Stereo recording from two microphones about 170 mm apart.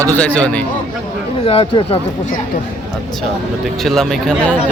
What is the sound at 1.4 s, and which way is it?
Speech, 30° left (ahead or behind).